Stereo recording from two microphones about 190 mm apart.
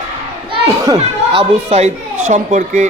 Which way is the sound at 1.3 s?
35° right (ahead or behind).